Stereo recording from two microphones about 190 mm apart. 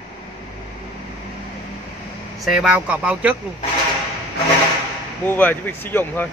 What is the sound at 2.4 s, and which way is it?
Speech, centre (ahead or behind).